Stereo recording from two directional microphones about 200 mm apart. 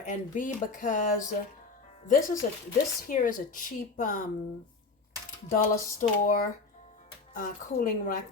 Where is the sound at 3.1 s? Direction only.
40° left (ahead or behind).